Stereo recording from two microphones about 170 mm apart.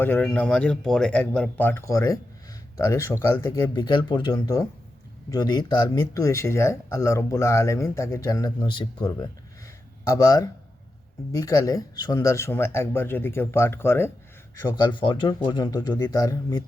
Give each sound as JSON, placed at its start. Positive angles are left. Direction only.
{"t": 0.0, "sound": "speech", "side_deg": 10}
{"t": 14.8, "sound": "speech", "side_deg": 25}